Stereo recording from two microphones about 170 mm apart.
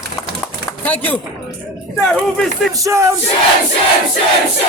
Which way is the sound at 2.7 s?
20° right (ahead or behind).